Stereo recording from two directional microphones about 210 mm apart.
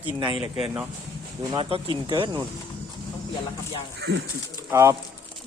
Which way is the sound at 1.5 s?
25° right (ahead or behind).